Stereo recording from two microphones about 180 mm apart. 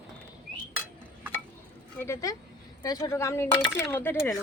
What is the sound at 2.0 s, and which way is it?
Speech, 15° left (ahead or behind).